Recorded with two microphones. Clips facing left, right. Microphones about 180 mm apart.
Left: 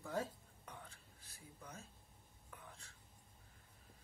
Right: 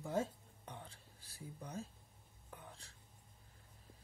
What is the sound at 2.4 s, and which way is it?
Whispering, 30° right (ahead or behind).